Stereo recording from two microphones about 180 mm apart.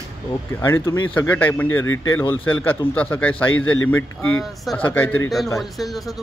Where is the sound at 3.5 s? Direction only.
90° left.